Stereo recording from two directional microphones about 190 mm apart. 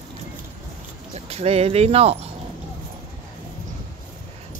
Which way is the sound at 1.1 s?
35° right (ahead or behind).